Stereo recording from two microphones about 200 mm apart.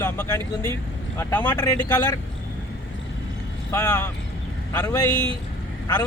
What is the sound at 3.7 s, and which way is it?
A man's voice, 15° left (ahead or behind).